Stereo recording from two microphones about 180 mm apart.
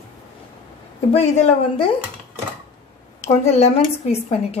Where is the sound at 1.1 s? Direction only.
35° left (ahead or behind).